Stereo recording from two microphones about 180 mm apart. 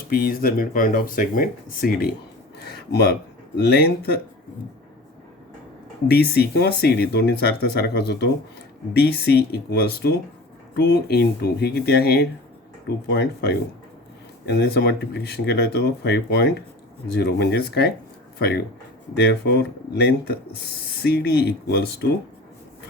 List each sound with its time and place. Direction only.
0.1 s speech: 55° left (ahead or behind)
2.9 s speech: 65° left (ahead or behind)
6.1 s speech: 65° left (ahead or behind)